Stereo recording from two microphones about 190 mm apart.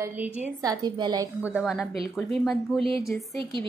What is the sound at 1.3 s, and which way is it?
A woman's voice, 10° right (ahead or behind).